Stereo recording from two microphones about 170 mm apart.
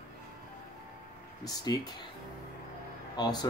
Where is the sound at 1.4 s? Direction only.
25° left (ahead or behind).